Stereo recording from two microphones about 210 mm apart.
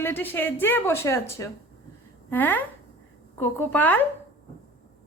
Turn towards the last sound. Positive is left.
turn(degrees=10)  # may be behind; listen again after turning